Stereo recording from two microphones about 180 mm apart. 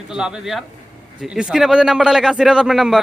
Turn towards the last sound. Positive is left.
turn(degrees=0)  # may be behind; listen again after turning